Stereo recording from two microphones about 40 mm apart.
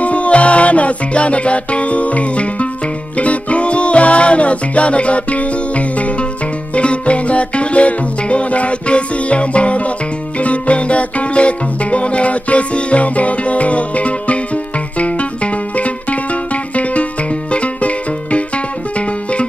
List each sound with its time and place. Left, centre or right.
0.0 s music: left
17.5 s music: left